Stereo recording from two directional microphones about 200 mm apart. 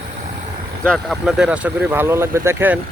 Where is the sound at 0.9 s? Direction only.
Centre (ahead or behind).